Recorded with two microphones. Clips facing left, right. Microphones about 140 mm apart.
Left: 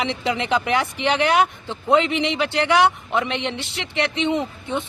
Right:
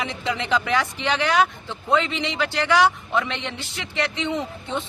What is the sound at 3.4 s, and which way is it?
Speech, 70° left (ahead or behind).